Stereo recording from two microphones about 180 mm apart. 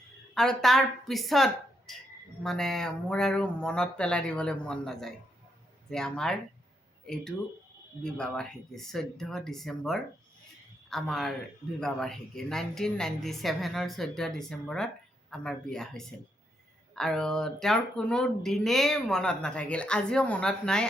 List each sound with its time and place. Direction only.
0.3 s speech: centre (ahead or behind)